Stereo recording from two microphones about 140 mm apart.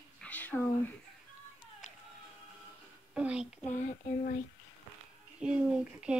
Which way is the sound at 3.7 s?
60° left (ahead or behind).